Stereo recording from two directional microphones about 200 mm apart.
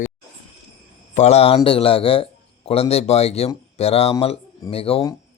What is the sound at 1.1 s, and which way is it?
A man's voice, 35° left (ahead or behind).